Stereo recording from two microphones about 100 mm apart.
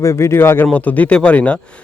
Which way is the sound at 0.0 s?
30° left (ahead or behind).